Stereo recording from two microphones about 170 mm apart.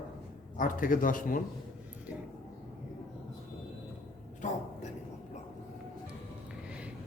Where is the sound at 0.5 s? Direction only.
50° left (ahead or behind).